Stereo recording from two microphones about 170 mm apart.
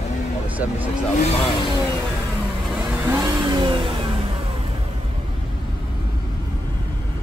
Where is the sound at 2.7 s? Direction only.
10° right (ahead or behind); by 4.0 s 30° right (ahead or behind).